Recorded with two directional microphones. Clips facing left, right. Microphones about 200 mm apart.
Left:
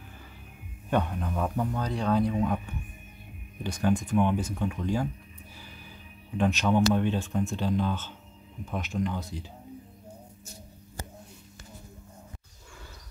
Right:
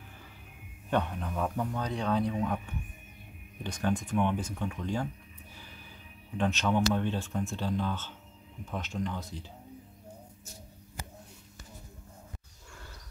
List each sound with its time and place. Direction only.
0.8 s a man's voice: 10° left (ahead or behind)
3.6 s speech: 10° left (ahead or behind)
6.3 s speech: 10° left (ahead or behind)